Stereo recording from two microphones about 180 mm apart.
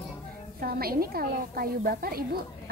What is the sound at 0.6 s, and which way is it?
Speech, 55° right (ahead or behind).